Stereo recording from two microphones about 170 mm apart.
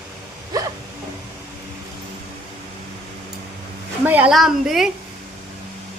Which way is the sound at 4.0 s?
10° right (ahead or behind).